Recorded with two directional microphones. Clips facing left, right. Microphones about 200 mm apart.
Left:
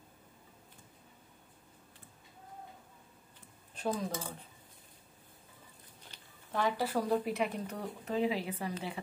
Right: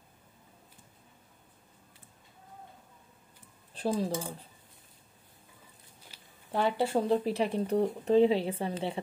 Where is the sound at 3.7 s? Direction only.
30° right (ahead or behind).